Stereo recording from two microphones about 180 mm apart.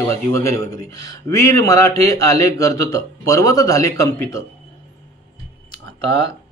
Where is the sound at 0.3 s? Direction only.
15° left (ahead or behind).